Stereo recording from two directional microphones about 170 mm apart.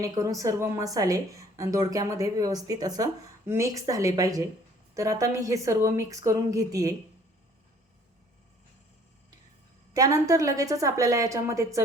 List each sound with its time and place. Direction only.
0.0 s a woman's voice: 20° right (ahead or behind)
9.9 s a woman's voice: 20° right (ahead or behind)